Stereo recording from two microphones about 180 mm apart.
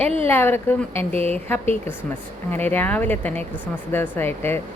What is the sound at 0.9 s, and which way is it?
Speech, 35° right (ahead or behind).